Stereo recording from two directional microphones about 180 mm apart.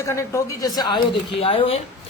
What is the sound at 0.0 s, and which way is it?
A woman's voice, 15° left (ahead or behind).